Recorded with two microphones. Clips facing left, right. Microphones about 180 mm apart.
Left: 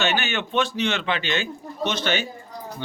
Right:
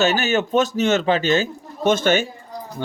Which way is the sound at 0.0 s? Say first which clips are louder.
Right 6 dB; 40° right (ahead or behind).